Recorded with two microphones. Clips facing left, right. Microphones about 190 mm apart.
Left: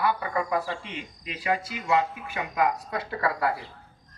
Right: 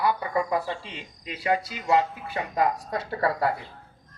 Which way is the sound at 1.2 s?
35° right (ahead or behind).